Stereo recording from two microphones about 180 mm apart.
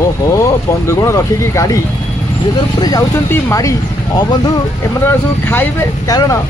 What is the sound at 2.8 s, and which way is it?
Speech, 15° left (ahead or behind).